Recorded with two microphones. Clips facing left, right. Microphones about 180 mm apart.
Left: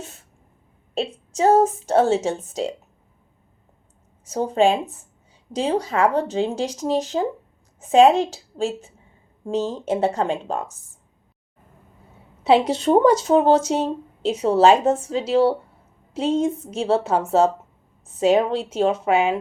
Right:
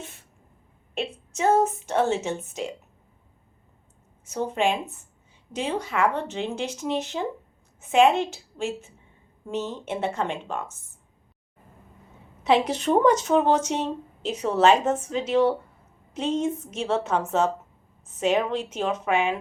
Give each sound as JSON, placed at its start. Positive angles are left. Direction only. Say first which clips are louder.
{"t": 0.9, "sound": "speech", "louder": "left 6 dB", "side_deg": 35}
{"t": 4.3, "sound": "speech", "louder": "left 6 dB", "side_deg": 35}
{"t": 12.4, "sound": "speech", "louder": "left 4 dB", "side_deg": 30}